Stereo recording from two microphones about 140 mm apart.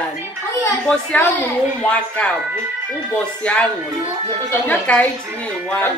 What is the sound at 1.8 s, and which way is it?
Speech, 10° left (ahead or behind).